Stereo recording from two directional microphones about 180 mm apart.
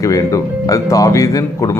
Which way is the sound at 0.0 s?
20° left (ahead or behind).